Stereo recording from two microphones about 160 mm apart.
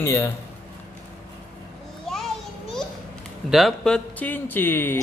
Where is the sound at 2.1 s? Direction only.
Centre (ahead or behind).